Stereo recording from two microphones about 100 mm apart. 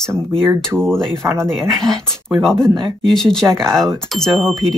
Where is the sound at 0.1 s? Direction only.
25° right (ahead or behind).